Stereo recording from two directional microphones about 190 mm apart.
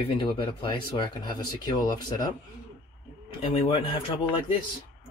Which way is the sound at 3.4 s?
30° left (ahead or behind).